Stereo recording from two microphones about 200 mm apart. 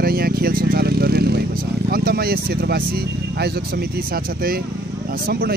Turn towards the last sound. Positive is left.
turn(degrees=-50)  # may be behind; listen again after turning